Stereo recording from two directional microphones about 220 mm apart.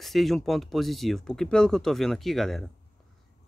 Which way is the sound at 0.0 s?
Centre (ahead or behind).